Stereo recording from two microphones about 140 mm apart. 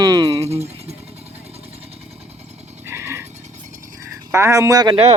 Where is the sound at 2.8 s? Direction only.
15° right (ahead or behind).